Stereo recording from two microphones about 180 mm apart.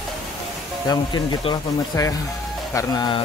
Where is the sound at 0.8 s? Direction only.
25° left (ahead or behind).